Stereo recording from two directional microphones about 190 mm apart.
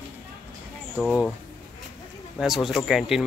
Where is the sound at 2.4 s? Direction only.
Centre (ahead or behind).